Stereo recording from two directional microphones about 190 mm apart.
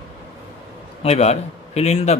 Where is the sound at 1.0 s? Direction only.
35° left (ahead or behind).